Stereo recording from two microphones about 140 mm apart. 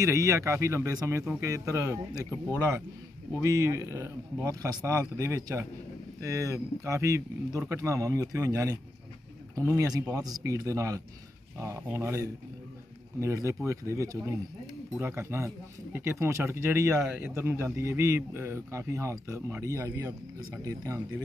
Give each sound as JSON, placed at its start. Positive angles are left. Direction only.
{"t": 0.0, "sound": "speech", "side_deg": -20}
{"t": 3.3, "sound": "speech", "side_deg": -25}